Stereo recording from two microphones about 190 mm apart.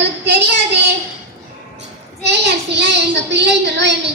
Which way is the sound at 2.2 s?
65° right (ahead or behind).